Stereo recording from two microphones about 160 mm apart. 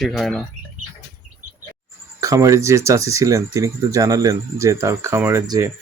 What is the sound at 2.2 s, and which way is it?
Speech, 20° right (ahead or behind).